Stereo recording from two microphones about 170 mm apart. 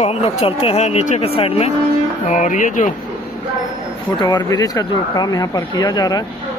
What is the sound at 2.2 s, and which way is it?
Speech, 45° left (ahead or behind).